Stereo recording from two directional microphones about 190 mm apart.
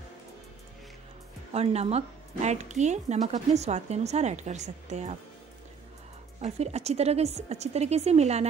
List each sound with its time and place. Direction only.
1.5 s speech: 35° right (ahead or behind)
6.4 s speech: 35° right (ahead or behind)